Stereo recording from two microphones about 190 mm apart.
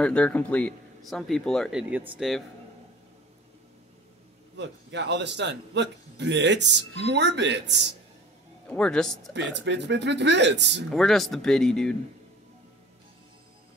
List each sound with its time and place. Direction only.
0.0 s speech: 5° left (ahead or behind)
4.6 s a man's voice: 65° right (ahead or behind)
8.6 s speech: 5° left (ahead or behind)
9.3 s speech: 65° right (ahead or behind)
10.9 s speech: centre (ahead or behind)